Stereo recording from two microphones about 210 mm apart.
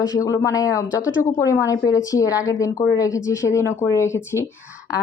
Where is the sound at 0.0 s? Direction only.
15° left (ahead or behind).